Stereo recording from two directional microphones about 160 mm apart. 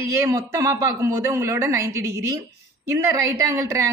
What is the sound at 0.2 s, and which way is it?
A woman's voice, 15° right (ahead or behind).